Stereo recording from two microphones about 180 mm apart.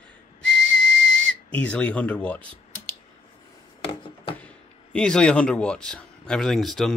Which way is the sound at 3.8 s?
30° left (ahead or behind).